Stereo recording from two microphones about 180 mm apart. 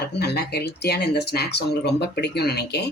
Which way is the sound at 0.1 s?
65° left (ahead or behind).